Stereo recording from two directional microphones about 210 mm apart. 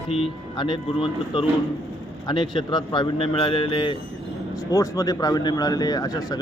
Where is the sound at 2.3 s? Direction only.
20° left (ahead or behind).